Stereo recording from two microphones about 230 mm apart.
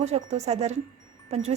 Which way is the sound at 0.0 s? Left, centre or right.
Right.